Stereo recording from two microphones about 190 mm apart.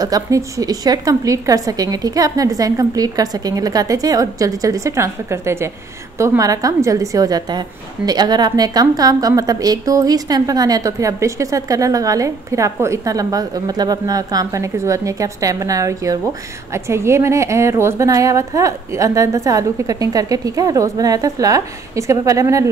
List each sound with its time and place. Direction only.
0.0 s a woman's voice: 20° right (ahead or behind)